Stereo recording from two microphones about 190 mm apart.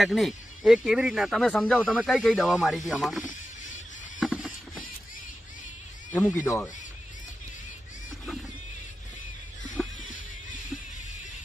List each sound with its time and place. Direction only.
0.0 s speech: centre (ahead or behind)
4.2 s a sound: centre (ahead or behind)
6.1 s speech: 15° left (ahead or behind)
9.8 s music: centre (ahead or behind)